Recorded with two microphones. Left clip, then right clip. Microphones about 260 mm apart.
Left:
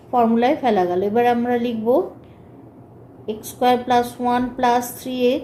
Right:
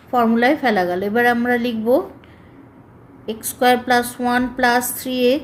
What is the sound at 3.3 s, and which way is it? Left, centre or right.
A woman's voice, right.